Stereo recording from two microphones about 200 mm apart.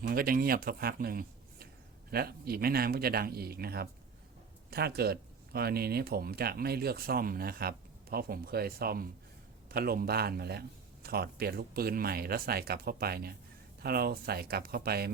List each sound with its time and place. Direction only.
0.0 s speech: 45° right (ahead or behind)